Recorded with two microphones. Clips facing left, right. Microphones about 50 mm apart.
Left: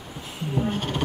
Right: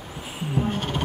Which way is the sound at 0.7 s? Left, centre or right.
Centre.